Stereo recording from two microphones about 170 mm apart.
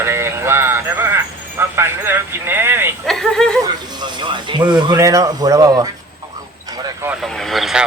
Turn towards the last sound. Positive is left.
turn(degrees=0)  # may be behind; listen again after turning